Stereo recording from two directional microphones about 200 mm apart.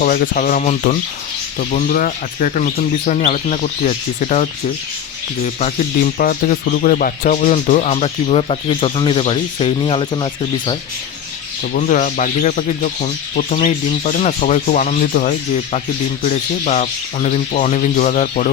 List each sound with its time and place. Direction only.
0.0 s speech: 45° left (ahead or behind)
5.5 s speech: 40° left (ahead or behind); by 10.2 s 25° left (ahead or behind)
11.7 s speech: 40° left (ahead or behind)